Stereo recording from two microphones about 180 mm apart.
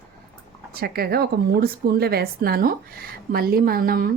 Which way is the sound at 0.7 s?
60° right (ahead or behind).